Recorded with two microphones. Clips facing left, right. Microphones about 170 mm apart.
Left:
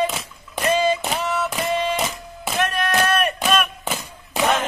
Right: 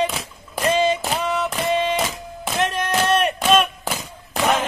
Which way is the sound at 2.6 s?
20° right (ahead or behind).